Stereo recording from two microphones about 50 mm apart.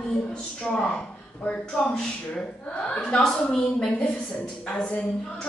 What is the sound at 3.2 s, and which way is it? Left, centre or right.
Speech, centre.